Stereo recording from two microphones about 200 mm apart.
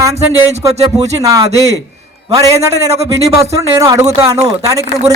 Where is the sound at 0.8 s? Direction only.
15° right (ahead or behind).